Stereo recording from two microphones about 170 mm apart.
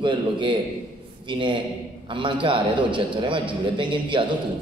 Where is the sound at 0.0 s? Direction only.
30° right (ahead or behind).